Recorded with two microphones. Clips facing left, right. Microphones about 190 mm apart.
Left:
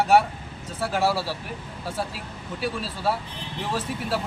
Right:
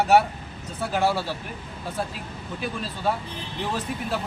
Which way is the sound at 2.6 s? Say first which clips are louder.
Left 1 dB; 5° left (ahead or behind).